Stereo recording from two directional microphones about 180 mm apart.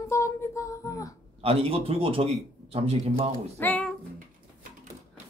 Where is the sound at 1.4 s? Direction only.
35° right (ahead or behind).